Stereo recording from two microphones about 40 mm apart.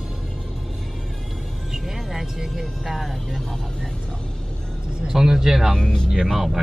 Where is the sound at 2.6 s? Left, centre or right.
Centre.